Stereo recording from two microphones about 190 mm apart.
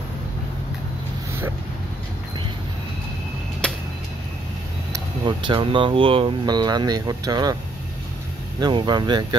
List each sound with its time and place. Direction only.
3.6 s a sound: 5° left (ahead or behind)
4.9 s speech: 25° right (ahead or behind)
8.5 s speech: 25° right (ahead or behind)